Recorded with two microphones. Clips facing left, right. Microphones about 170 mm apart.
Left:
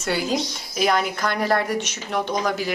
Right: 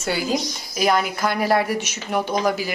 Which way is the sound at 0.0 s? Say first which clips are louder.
Even; centre (ahead or behind).